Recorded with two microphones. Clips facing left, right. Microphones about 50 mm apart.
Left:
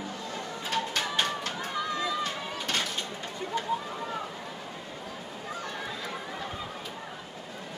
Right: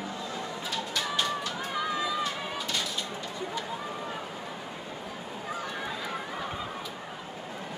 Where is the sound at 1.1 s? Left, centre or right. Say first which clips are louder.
Right 1 dB; left.